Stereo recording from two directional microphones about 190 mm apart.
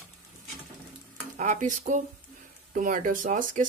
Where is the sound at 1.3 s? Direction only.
40° right (ahead or behind).